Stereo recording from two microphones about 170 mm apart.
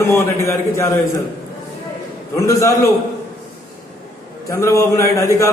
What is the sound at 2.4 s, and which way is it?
Speech, 20° left (ahead or behind).